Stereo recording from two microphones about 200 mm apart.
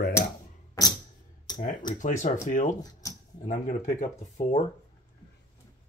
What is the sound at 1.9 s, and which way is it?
Speech, 40° left (ahead or behind).